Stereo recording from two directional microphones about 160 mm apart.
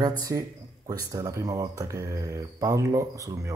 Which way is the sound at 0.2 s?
20° right (ahead or behind).